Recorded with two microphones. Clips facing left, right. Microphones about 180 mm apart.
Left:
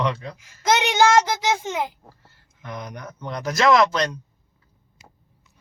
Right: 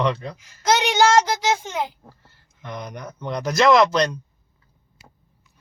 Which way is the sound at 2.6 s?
Centre (ahead or behind).